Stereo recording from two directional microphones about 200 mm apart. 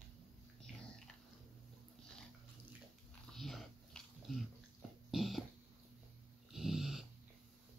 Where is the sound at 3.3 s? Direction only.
Centre (ahead or behind).